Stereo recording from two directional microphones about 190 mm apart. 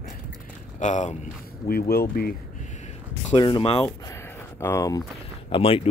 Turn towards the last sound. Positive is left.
turn(degrees=30)  # may be behind; listen again after turning